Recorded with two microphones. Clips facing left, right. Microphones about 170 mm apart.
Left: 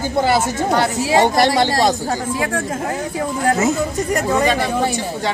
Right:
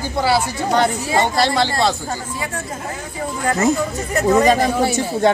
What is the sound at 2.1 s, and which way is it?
Speech, 55° left (ahead or behind).